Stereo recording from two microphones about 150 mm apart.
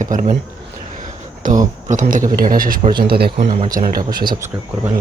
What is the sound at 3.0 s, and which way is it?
Speech, 90° right.